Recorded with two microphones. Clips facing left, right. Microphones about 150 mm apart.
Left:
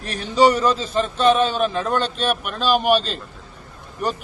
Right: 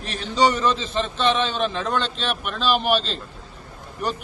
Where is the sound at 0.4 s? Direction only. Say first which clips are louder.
Left 3 dB; 40° left (ahead or behind).